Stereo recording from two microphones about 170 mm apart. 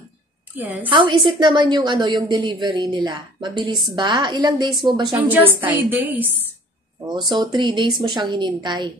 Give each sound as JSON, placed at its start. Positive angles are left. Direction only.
{"t": 0.6, "sound": "a woman's voice", "side_deg": -10}
{"t": 0.8, "sound": "a woman's voice", "side_deg": -30}
{"t": 5.1, "sound": "a woman's voice", "side_deg": -10}
{"t": 7.2, "sound": "a woman's voice", "side_deg": -30}